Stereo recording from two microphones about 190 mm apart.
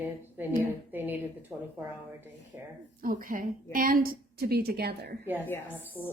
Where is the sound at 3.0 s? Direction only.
45° right (ahead or behind).